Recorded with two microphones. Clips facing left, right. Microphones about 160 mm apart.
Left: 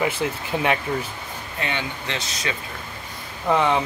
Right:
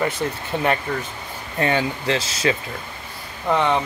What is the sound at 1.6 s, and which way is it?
Speech, 35° right (ahead or behind).